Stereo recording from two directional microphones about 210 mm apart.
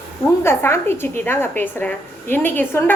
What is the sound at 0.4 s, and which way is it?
A woman's voice, 10° left (ahead or behind).